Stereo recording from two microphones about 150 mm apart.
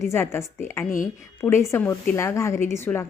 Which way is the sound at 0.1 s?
15° left (ahead or behind).